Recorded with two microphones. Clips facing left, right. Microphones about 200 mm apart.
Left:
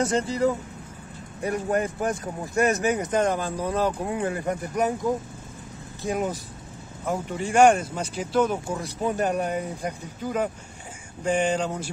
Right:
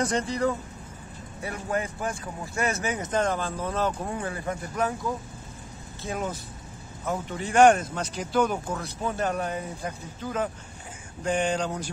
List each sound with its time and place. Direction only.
0.0 s speech: 25° left (ahead or behind)
1.4 s speech: 40° left (ahead or behind)
3.0 s speech: 15° left (ahead or behind)
6.0 s speech: 15° left (ahead or behind)
9.0 s speech: 15° left (ahead or behind)